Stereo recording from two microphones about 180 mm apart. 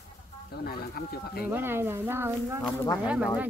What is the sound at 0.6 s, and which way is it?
Speech, 60° left (ahead or behind).